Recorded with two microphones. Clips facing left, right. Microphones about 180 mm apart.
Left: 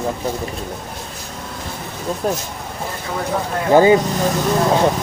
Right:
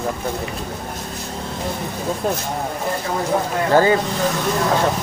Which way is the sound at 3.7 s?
15° left (ahead or behind).